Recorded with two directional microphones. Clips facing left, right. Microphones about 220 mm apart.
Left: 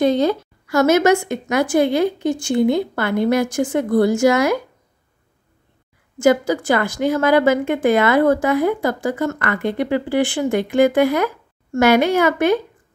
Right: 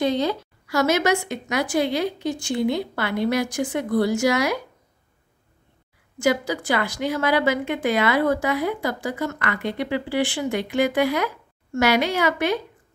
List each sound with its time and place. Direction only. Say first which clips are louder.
0.0 s a woman's voice: left 6 dB; 50° left (ahead or behind)
6.1 s a woman's voice: left 6 dB; 50° left (ahead or behind)